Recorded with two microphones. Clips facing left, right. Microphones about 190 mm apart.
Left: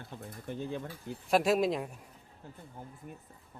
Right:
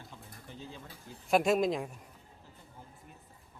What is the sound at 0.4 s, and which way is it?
Speech, 55° left (ahead or behind).